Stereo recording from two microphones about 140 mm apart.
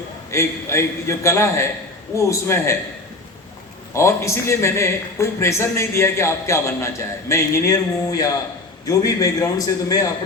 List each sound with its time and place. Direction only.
0.3 s a man's voice: 20° left (ahead or behind)
3.9 s a man's voice: 20° left (ahead or behind)